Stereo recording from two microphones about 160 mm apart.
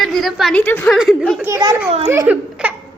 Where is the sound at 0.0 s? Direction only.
Centre (ahead or behind).